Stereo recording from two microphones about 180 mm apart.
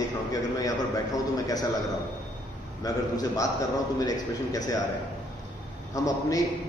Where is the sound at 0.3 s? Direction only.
20° left (ahead or behind).